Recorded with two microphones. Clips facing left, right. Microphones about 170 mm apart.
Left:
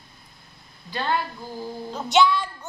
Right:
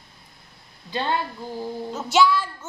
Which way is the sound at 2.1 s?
5° right (ahead or behind).